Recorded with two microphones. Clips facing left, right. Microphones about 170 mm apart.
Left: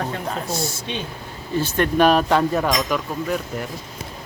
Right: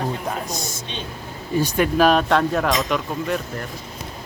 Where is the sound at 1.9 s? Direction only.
Centre (ahead or behind).